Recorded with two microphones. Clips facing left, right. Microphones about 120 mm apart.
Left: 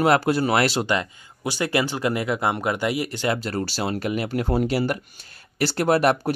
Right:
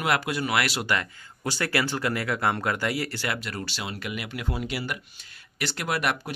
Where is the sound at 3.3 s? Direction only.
35° left (ahead or behind).